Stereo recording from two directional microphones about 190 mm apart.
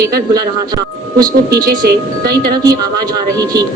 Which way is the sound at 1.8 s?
55° right (ahead or behind).